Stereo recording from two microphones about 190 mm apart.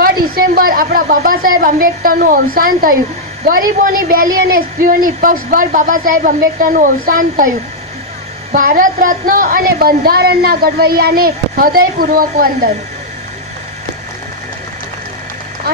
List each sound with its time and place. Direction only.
0.0 s a woman's voice: 50° right (ahead or behind)
8.5 s a woman's voice: 45° right (ahead or behind)